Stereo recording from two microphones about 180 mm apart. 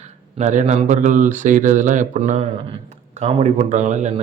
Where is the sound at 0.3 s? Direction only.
40° right (ahead or behind).